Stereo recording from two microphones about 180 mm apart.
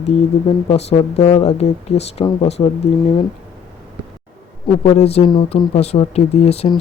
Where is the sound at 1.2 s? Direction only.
30° left (ahead or behind).